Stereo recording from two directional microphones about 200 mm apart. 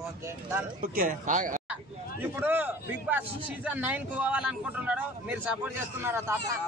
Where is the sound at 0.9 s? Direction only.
45° right (ahead or behind).